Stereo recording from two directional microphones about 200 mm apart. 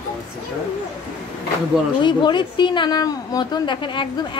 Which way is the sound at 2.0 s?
25° left (ahead or behind).